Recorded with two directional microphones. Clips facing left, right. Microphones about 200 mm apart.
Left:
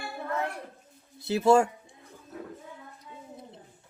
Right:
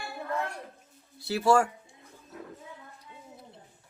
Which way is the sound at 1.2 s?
20° left (ahead or behind).